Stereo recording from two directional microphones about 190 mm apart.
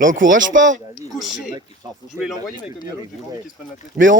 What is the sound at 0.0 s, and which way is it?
Speech, 45° right (ahead or behind).